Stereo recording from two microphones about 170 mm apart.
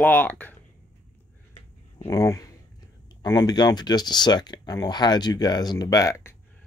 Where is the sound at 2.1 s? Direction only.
20° left (ahead or behind).